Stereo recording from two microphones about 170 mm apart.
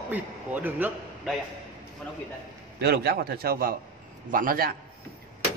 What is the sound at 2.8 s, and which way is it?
A man's voice, 70° right (ahead or behind).